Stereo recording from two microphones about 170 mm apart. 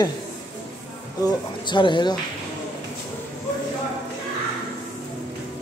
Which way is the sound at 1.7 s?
25° left (ahead or behind).